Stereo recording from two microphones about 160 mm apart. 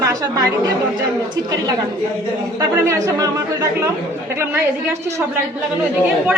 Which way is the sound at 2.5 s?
20° right (ahead or behind).